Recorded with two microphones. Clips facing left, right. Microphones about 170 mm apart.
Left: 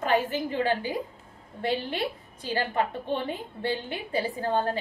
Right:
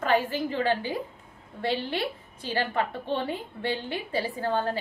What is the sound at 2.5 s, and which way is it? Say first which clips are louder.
A woman's voice: left 1 dB; 15° left (ahead or behind).